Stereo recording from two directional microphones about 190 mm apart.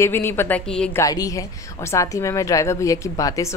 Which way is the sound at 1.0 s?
20° left (ahead or behind).